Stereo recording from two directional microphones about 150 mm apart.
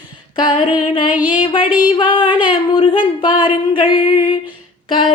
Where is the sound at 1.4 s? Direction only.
35° left (ahead or behind).